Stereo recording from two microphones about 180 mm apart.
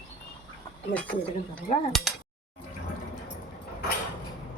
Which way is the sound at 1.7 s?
40° left (ahead or behind).